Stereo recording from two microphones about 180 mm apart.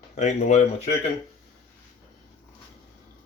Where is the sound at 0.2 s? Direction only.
40° left (ahead or behind).